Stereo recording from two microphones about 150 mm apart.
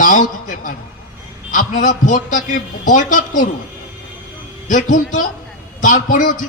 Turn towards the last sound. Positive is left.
turn(degrees=60)  # may be behind; listen again after turning